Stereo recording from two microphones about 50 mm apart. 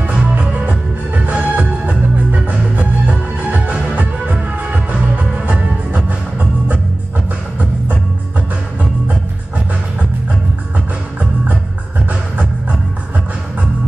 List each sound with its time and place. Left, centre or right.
0.1 s music: right